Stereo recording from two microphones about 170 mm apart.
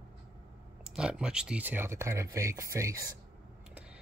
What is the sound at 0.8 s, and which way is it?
Speech, 5° right (ahead or behind).